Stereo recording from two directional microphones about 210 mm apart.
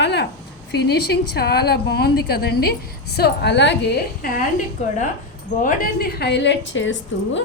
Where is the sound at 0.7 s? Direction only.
55° left (ahead or behind).